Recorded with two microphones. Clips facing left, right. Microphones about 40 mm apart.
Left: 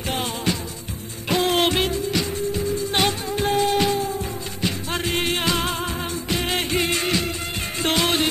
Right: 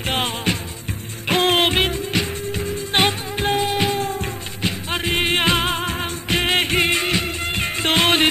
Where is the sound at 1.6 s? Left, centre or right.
Right.